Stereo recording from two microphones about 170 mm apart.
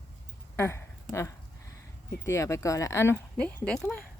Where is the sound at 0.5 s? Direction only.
15° left (ahead or behind).